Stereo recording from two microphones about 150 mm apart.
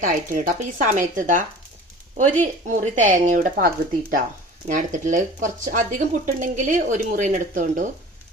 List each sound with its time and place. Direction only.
0.0 s speech: 65° right (ahead or behind)
4.7 s speech: 60° right (ahead or behind)